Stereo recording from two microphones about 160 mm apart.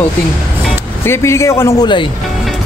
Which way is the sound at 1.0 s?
15° left (ahead or behind).